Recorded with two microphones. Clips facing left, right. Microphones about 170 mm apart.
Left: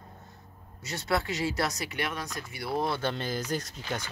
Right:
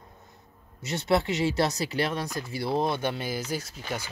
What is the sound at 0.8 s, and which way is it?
Speech, 25° right (ahead or behind).